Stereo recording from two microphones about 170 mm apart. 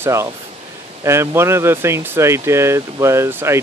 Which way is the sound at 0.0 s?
15° right (ahead or behind).